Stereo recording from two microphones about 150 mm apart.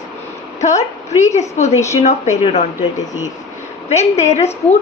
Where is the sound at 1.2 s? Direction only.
50° left (ahead or behind).